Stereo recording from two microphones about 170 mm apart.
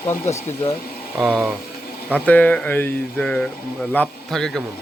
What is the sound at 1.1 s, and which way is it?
Speech, 5° right (ahead or behind).